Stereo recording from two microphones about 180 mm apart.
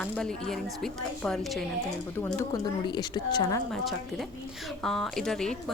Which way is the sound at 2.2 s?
20° left (ahead or behind).